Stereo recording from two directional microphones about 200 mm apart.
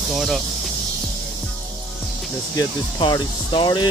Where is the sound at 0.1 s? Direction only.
Centre (ahead or behind).